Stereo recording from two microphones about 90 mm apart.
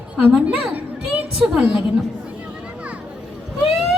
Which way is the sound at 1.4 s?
10° right (ahead or behind).